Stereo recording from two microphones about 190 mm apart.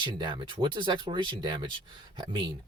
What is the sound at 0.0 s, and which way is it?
A man's voice, 25° right (ahead or behind).